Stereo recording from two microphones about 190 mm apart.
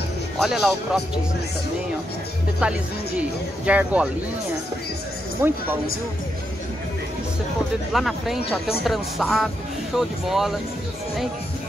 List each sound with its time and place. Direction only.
0.4 s speech: centre (ahead or behind)
2.6 s speech: 5° right (ahead or behind)
5.4 s speech: 15° right (ahead or behind)
7.9 s speech: centre (ahead or behind)